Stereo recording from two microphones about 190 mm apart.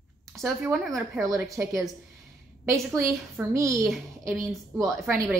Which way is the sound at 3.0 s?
15° right (ahead or behind).